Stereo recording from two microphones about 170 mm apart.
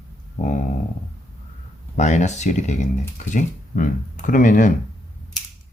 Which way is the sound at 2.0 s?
45° left (ahead or behind).